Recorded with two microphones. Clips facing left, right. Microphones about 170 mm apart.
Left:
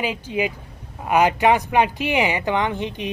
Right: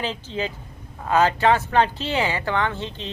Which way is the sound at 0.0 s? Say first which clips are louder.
Left 4 dB; 10° left (ahead or behind).